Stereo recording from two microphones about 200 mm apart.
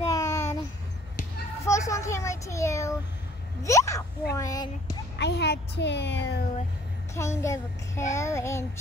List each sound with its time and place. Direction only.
0.1 s a sound: 15° left (ahead or behind)
1.6 s a child's voice: 15° left (ahead or behind)
5.1 s speech: 60° left (ahead or behind)
7.2 s a woman's voice: 15° left (ahead or behind)